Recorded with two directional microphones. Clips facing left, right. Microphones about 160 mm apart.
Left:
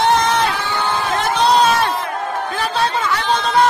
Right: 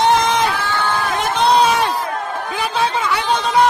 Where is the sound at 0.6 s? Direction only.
20° left (ahead or behind).